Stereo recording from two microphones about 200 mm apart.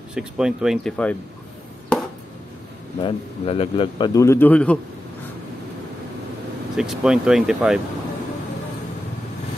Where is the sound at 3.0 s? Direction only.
25° left (ahead or behind); by 4.7 s 5° left (ahead or behind).